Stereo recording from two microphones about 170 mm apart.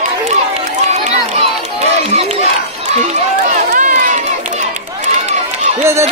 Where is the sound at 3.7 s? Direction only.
50° right (ahead or behind).